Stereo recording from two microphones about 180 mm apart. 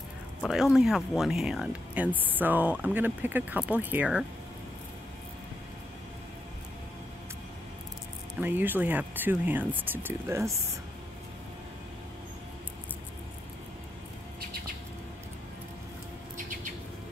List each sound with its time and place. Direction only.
0.4 s speech: centre (ahead or behind)
8.4 s speech: 10° right (ahead or behind)